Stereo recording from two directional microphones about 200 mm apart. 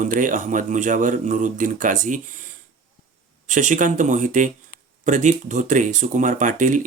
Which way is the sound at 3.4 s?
40° right (ahead or behind).